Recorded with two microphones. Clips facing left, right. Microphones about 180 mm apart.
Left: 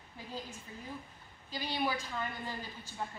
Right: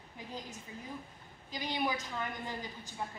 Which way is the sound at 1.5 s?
15° right (ahead or behind).